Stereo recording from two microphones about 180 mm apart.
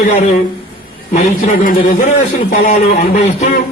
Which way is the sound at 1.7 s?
50° left (ahead or behind).